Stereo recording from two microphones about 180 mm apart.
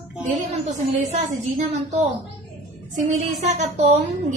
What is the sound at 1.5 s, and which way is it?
A woman's voice, 40° right (ahead or behind).